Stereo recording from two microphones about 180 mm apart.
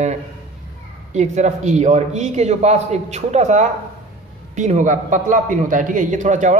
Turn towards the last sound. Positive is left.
turn(degrees=-45)  # may be behind; listen again after turning